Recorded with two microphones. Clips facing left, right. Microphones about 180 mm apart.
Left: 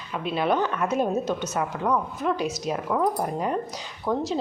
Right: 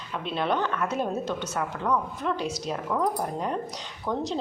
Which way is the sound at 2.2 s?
10° left (ahead or behind).